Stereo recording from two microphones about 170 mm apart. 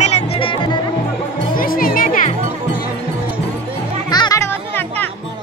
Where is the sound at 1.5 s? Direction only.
55° left (ahead or behind).